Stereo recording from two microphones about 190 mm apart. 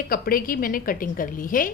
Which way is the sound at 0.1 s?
50° left (ahead or behind).